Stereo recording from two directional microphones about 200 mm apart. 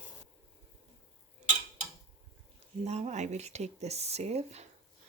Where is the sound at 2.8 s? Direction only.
35° right (ahead or behind).